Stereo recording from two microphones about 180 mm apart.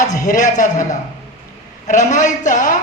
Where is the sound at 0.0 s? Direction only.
45° left (ahead or behind).